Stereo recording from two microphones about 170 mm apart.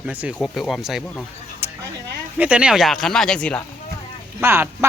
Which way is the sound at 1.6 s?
15° right (ahead or behind).